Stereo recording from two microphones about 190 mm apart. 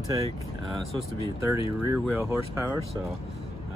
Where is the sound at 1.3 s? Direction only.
10° right (ahead or behind).